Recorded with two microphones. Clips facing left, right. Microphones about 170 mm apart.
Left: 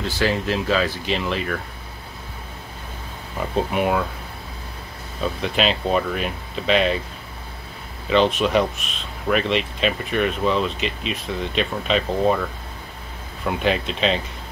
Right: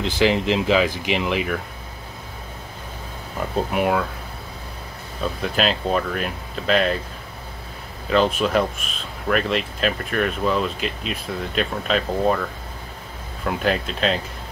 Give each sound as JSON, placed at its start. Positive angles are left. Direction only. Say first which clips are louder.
{"t": 0.0, "sound": "speech", "louder": "right 3 dB", "side_deg": -20}
{"t": 3.3, "sound": "speech", "louder": "even", "side_deg": 0}
{"t": 5.2, "sound": "speech", "louder": "left 1 dB", "side_deg": 0}
{"t": 8.1, "sound": "speech", "louder": "left 1 dB", "side_deg": 0}
{"t": 13.5, "sound": "speech", "louder": "left 1 dB", "side_deg": 0}